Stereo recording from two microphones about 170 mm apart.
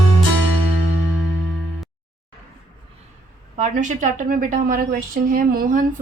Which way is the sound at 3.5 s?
45° right (ahead or behind).